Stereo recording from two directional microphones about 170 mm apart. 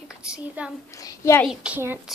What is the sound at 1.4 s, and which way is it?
Speech, 10° right (ahead or behind).